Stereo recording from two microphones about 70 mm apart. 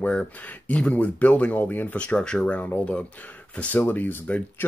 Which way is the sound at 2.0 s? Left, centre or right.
Centre.